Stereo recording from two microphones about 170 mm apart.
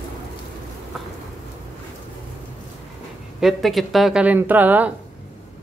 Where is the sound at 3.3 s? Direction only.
Centre (ahead or behind).